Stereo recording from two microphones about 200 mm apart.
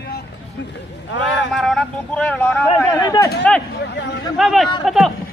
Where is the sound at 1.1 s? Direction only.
65° left (ahead or behind).